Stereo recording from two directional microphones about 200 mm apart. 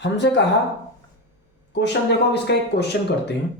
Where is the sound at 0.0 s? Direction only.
60° left (ahead or behind).